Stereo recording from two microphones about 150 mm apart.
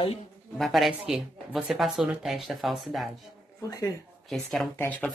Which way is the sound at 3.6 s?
25° left (ahead or behind).